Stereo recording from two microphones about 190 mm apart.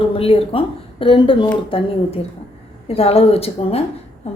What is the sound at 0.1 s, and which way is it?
A woman's voice, 30° left (ahead or behind).